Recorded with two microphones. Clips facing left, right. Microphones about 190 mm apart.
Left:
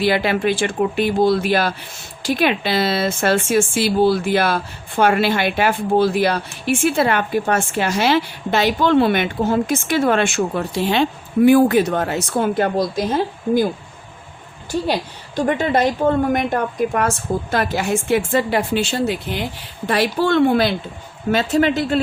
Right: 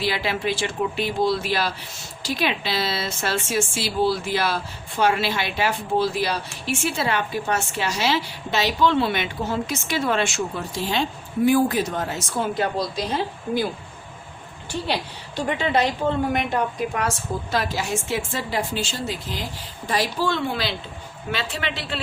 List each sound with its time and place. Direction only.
0.0 s a woman's voice: 55° left (ahead or behind)
15.4 s a woman's voice: 45° left (ahead or behind)